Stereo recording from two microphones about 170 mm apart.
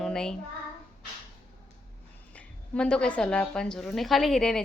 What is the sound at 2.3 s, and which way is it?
Speech, 5° left (ahead or behind).